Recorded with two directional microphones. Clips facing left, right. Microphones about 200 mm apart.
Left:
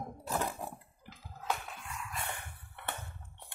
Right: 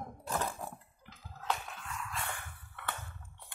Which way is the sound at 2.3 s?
25° left (ahead or behind).